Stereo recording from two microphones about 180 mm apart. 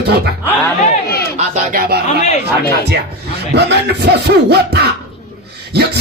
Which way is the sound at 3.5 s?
65° right (ahead or behind).